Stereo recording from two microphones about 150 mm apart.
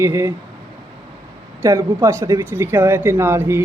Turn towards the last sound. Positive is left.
turn(degrees=-15)  # may be behind; listen again after turning